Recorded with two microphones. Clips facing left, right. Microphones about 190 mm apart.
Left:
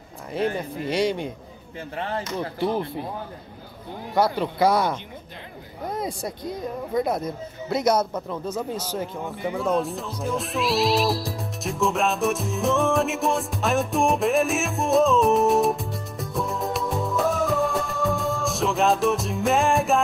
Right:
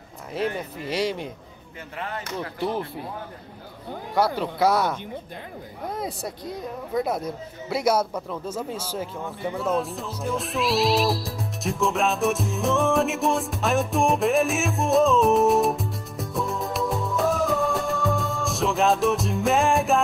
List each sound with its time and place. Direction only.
0.6 s speech: 5° right (ahead or behind)
2.0 s speech: 30° left (ahead or behind)
4.1 s speech: 5° right (ahead or behind)
9.1 s speech: 15° left (ahead or behind)
9.6 s speech: centre (ahead or behind)